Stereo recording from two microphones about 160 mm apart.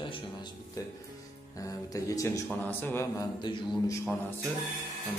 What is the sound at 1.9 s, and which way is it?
A man's voice, 20° left (ahead or behind).